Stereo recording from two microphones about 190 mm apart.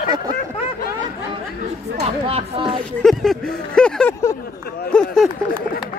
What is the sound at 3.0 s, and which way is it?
Speech, centre (ahead or behind).